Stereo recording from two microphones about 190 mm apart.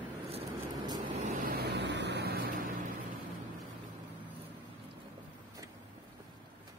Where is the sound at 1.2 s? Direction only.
45° right (ahead or behind).